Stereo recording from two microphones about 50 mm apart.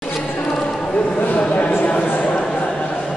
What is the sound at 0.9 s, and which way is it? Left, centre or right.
Speech, left.